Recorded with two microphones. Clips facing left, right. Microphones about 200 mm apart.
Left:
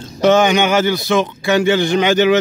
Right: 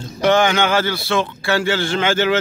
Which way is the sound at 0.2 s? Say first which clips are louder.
Left 3 dB; 20° left (ahead or behind).